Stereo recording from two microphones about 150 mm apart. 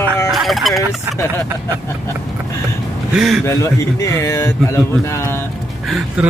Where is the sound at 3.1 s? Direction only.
Centre (ahead or behind).